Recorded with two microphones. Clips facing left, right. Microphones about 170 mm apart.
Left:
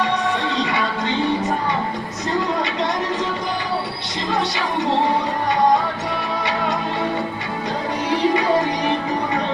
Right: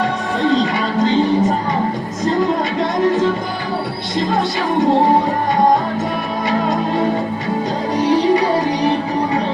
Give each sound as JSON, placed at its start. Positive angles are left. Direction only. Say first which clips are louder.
{"t": 0.5, "sound": "music", "louder": "right 6 dB", "side_deg": -45}
{"t": 8.0, "sound": "music", "louder": "right 5 dB", "side_deg": -35}